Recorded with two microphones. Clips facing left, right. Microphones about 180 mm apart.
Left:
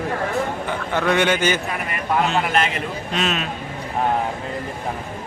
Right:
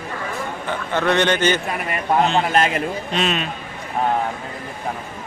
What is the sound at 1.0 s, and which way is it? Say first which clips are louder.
Speech: right 1 dB; 10° left (ahead or behind).